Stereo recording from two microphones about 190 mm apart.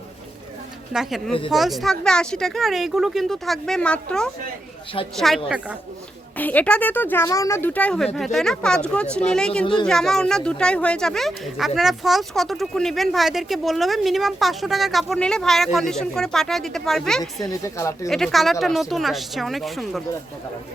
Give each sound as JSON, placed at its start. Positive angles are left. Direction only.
{"t": 1.5, "sound": "speech", "side_deg": 0}
{"t": 6.3, "sound": "speech", "side_deg": 10}
{"t": 17.6, "sound": "speech", "side_deg": 15}
{"t": 18.1, "sound": "speech", "side_deg": 0}